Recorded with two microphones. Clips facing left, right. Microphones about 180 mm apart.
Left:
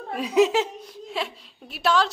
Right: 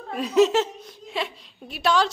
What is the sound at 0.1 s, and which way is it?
A woman's voice, 10° left (ahead or behind).